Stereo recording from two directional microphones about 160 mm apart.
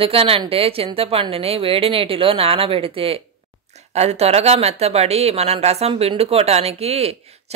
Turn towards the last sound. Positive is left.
turn(degrees=-40)  # may be behind; listen again after turning